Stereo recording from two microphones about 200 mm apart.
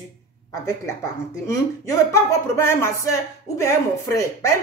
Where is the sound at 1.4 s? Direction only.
15° left (ahead or behind).